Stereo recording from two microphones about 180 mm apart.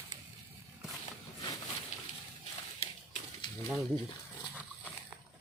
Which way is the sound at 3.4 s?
25° left (ahead or behind).